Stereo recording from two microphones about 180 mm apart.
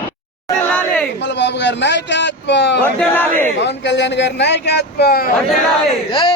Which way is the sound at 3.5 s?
75° left (ahead or behind).